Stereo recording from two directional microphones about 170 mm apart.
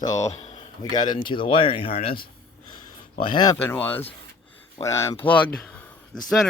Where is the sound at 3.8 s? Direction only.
10° left (ahead or behind).